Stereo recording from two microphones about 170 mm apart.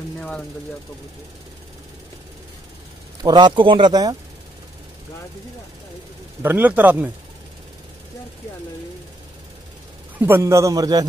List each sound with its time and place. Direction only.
3.2 s a man's voice: 25° right (ahead or behind)
6.4 s a man's voice: 10° right (ahead or behind)
10.1 s a man's voice: 10° right (ahead or behind)